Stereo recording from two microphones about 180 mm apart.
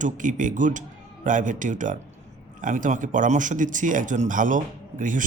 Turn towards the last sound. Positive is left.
turn(degrees=-45)  # may be behind; listen again after turning